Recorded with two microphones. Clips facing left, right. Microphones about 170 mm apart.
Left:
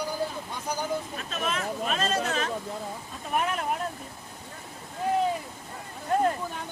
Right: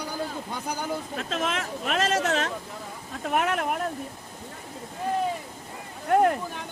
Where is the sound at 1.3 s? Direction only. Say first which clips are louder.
Right 1 dB; 90° right; by 3.8 s 70° right (ahead or behind).